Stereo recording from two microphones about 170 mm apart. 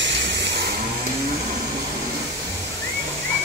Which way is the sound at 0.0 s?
90° right.